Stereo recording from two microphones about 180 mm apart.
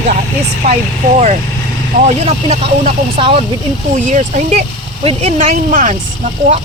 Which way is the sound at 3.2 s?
30° right (ahead or behind).